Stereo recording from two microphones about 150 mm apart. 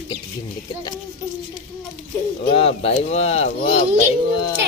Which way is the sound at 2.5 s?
40° left (ahead or behind).